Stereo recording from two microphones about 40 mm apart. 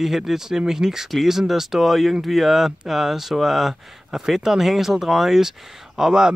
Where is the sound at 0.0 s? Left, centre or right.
Centre.